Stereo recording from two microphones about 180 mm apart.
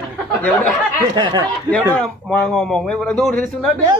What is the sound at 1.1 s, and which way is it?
Speech, 25° right (ahead or behind).